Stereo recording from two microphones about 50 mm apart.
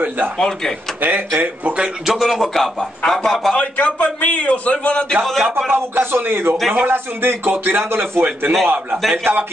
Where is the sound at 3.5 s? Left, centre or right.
Left.